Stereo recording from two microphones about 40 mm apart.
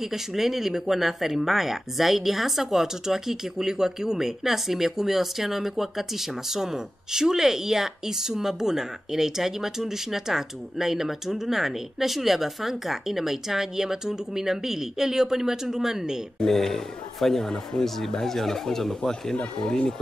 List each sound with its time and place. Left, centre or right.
0.0 s speech: centre
16.3 s a man's voice: centre